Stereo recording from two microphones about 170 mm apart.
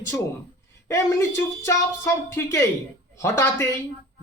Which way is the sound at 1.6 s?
15° left (ahead or behind).